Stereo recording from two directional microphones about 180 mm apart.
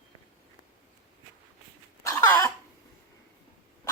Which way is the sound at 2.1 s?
15° left (ahead or behind).